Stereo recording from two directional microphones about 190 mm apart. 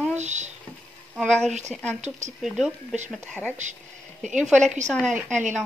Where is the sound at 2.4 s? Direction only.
Centre (ahead or behind).